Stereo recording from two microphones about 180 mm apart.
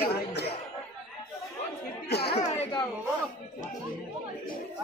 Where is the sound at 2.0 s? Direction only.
65° left (ahead or behind).